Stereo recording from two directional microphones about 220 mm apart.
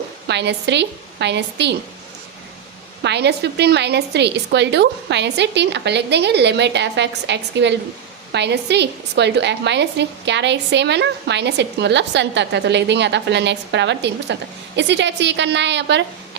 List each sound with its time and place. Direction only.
0.3 s a woman's voice: 50° right (ahead or behind)
3.0 s a woman's voice: 50° right (ahead or behind)